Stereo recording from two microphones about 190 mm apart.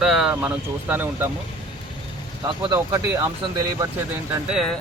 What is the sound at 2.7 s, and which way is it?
Speech, 15° right (ahead or behind).